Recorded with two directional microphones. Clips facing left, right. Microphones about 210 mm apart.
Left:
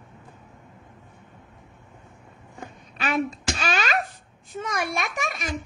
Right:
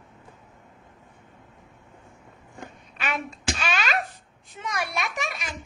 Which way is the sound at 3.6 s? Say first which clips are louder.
Left 2 dB; 45° left (ahead or behind).